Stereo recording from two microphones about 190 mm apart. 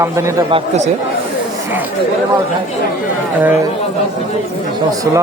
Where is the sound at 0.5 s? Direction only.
35° right (ahead or behind).